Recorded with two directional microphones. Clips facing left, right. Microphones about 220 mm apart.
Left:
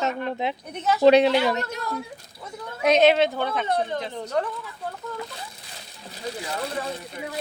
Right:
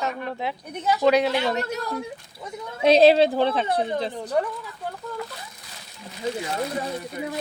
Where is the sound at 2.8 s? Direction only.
30° right (ahead or behind).